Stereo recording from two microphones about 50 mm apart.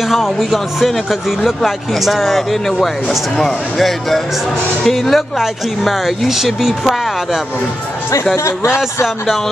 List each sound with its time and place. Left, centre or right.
0.1 s speech: centre
8.5 s speech: left